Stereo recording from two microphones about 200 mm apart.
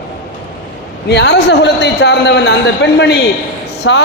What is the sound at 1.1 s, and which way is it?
A man's voice, 55° left (ahead or behind).